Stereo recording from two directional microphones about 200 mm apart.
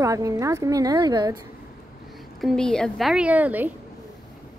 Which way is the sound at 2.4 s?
5° left (ahead or behind).